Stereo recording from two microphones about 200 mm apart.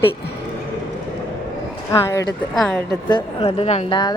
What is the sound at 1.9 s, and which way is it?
A woman's voice, 15° left (ahead or behind).